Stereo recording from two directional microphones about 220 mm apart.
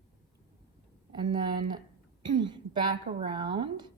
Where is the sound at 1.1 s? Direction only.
20° right (ahead or behind).